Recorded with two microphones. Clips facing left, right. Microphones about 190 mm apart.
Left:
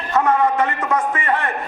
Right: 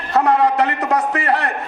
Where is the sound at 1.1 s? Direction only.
75° right (ahead or behind).